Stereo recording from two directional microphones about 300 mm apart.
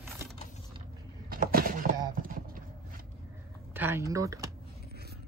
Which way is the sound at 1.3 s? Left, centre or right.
Right.